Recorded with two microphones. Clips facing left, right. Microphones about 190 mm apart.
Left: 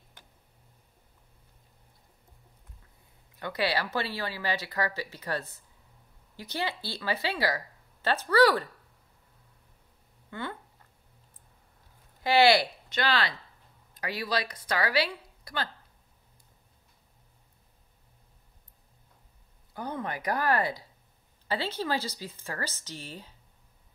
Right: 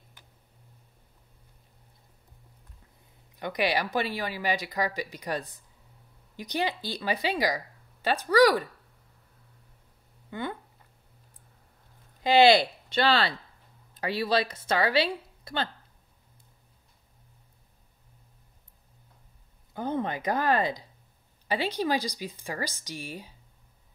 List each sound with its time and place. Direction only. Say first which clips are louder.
3.3 s speech: right 2 dB; 15° right (ahead or behind)
12.2 s speech: right 3 dB; 20° right (ahead or behind)
19.7 s speech: right 5 dB; 25° right (ahead or behind)